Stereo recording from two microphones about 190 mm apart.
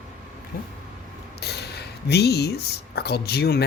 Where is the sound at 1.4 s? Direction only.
60° left (ahead or behind).